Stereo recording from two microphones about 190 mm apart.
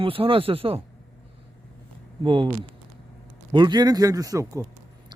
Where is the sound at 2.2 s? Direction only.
25° right (ahead or behind).